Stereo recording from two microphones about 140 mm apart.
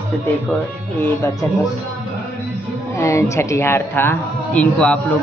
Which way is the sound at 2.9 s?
20° left (ahead or behind).